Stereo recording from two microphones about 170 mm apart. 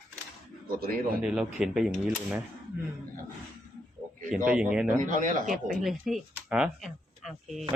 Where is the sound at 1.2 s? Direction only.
5° right (ahead or behind).